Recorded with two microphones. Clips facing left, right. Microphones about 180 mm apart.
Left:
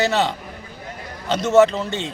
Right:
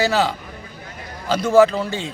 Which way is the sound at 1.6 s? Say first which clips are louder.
Right 1 dB; 5° right (ahead or behind).